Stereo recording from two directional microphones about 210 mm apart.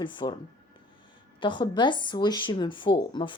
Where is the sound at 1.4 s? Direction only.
20° left (ahead or behind).